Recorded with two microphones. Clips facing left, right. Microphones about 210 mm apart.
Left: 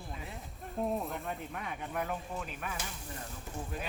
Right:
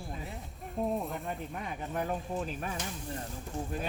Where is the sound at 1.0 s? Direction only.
Centre (ahead or behind).